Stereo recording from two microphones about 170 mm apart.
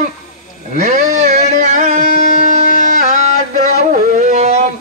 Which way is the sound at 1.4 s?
45° right (ahead or behind).